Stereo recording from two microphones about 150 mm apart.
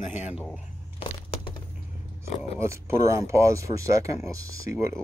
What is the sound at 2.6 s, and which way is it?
Speech, 20° right (ahead or behind).